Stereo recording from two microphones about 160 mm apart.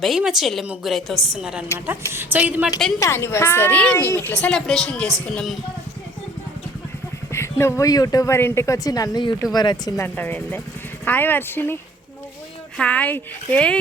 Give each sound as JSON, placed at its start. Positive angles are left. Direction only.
{"t": 0.0, "sound": "a woman's voice", "side_deg": 0}
{"t": 3.0, "sound": "a woman's voice", "side_deg": 15}
{"t": 7.6, "sound": "speech", "side_deg": 20}
{"t": 10.2, "sound": "a woman's voice", "side_deg": 10}